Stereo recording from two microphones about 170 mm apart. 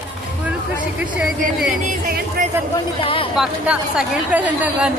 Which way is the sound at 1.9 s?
55° right (ahead or behind).